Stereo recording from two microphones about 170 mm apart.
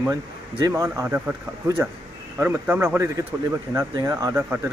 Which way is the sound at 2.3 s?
10° right (ahead or behind).